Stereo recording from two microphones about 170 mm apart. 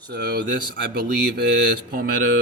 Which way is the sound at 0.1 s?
70° right (ahead or behind).